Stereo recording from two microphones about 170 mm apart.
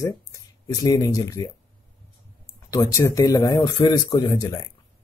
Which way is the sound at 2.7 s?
20° left (ahead or behind).